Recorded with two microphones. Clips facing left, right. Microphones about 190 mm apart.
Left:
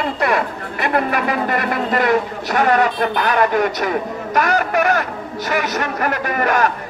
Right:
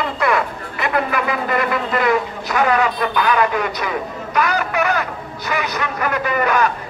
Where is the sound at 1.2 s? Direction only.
40° left (ahead or behind).